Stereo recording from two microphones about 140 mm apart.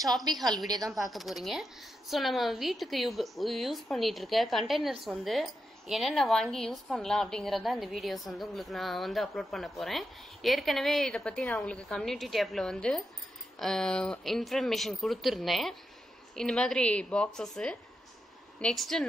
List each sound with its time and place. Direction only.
0.4 s speech: centre (ahead or behind)
0.7 s speech: 25° right (ahead or behind)
0.9 s a woman's voice: centre (ahead or behind)